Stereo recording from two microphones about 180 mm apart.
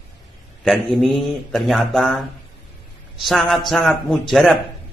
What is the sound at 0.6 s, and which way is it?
A man's voice, centre (ahead or behind).